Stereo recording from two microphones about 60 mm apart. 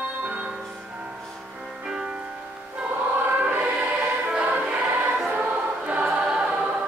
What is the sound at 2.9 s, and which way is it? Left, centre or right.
Choir, right.